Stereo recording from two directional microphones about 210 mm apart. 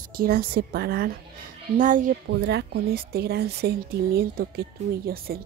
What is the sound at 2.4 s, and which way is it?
Speech, 50° right (ahead or behind).